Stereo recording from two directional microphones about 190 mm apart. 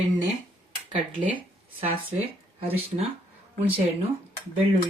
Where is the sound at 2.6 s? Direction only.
30° right (ahead or behind).